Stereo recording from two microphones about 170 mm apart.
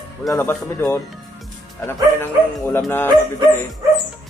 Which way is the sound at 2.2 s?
15° left (ahead or behind).